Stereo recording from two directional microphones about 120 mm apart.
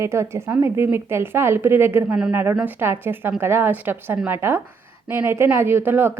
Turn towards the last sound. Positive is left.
turn(degrees=-20)  # may be behind; listen again after turning